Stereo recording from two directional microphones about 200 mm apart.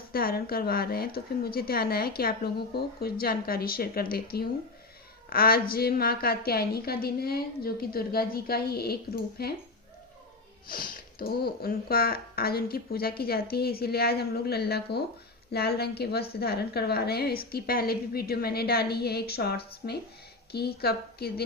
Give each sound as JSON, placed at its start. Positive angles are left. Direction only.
{"t": 0.1, "sound": "speech", "side_deg": 50}
{"t": 10.7, "sound": "speech", "side_deg": 50}